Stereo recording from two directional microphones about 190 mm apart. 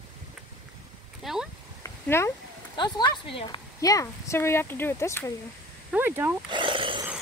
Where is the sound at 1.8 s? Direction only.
15° left (ahead or behind).